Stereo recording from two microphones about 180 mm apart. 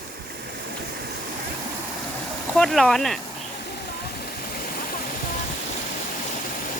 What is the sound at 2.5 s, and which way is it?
Speech, centre (ahead or behind).